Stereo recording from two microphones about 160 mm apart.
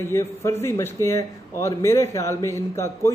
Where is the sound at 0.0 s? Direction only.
15° left (ahead or behind).